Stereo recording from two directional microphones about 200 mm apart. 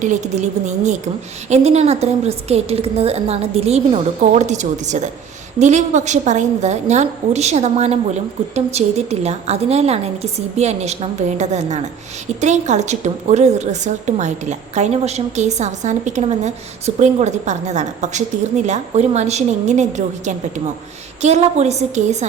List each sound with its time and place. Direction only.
0.0 s a woman's voice: 35° right (ahead or behind)